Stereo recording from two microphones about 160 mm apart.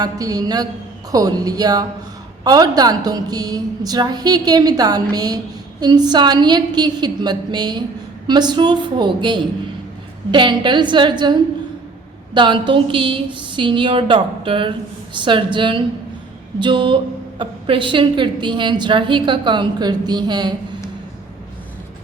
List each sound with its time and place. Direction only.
0.0 s a woman's voice: 25° right (ahead or behind)